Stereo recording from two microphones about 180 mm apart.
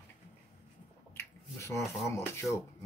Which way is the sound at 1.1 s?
15° left (ahead or behind).